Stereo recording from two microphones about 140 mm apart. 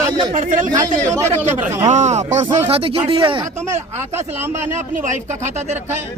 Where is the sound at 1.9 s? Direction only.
55° right (ahead or behind); by 3.4 s 40° right (ahead or behind).